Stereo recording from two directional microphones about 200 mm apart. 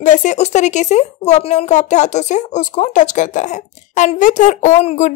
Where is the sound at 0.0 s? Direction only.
40° left (ahead or behind).